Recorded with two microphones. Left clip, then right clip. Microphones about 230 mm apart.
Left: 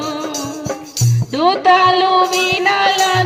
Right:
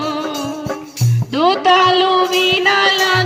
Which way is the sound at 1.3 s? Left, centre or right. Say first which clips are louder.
Even; right.